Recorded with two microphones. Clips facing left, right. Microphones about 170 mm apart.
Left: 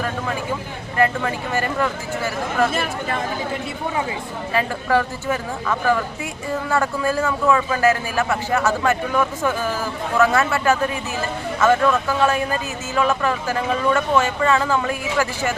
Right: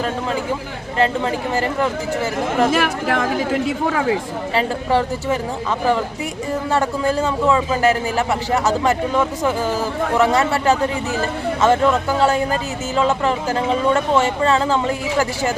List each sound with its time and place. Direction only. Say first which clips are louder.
0.9 s speech: right 2 dB; 25° right (ahead or behind)
2.6 s speech: right 5 dB; 90° right
4.5 s speech: right 1 dB; 25° right (ahead or behind)
6.7 s speech: right 2 dB; 20° right (ahead or behind)
10.5 s speech: right 2 dB; 30° right (ahead or behind)